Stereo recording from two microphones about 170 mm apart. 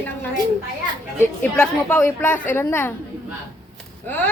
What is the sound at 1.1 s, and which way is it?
Speech, 10° left (ahead or behind).